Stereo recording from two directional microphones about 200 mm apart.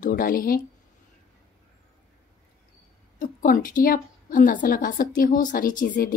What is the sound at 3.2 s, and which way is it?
A woman's voice, 45° left (ahead or behind).